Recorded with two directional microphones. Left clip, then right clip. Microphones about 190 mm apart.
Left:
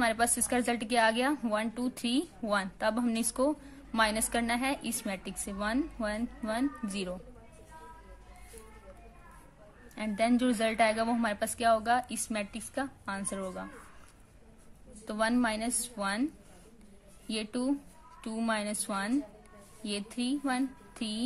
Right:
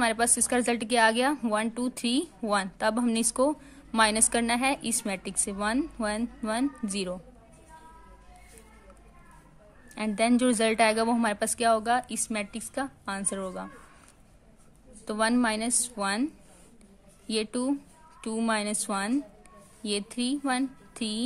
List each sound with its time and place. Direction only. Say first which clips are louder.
0.0 s a woman's voice: right 3 dB; 30° right (ahead or behind)
9.9 s a woman's voice: right 4 dB; 30° right (ahead or behind)
15.0 s a woman's voice: right 4 dB; 30° right (ahead or behind)
17.3 s a woman's voice: right 4 dB; 25° right (ahead or behind)